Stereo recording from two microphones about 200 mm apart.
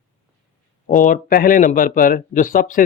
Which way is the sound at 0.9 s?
40° left (ahead or behind).